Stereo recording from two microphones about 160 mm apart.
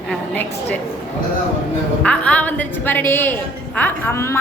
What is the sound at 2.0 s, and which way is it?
A woman's voice, 10° left (ahead or behind).